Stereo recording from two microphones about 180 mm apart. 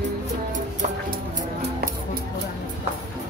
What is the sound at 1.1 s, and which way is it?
Music, 60° right (ahead or behind).